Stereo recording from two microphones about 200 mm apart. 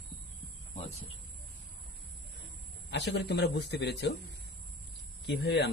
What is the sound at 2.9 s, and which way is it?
Speech, 55° left (ahead or behind).